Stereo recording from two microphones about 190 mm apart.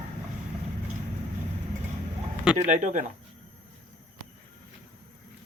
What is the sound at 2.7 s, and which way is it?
Speech, 40° right (ahead or behind).